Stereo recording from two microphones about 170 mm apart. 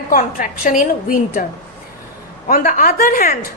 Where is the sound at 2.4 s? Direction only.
55° left (ahead or behind).